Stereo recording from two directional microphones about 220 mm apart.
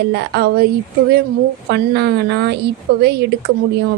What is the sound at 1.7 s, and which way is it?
Speech, 50° right (ahead or behind).